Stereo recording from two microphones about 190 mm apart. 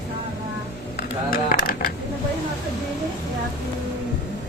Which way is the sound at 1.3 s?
50° left (ahead or behind).